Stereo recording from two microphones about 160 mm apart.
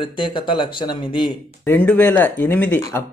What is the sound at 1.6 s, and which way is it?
Speech, 10° left (ahead or behind).